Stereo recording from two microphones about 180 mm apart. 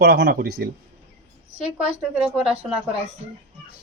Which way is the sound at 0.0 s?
65° right (ahead or behind).